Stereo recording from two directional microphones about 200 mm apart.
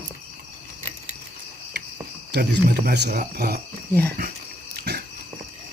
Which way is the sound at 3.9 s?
10° left (ahead or behind).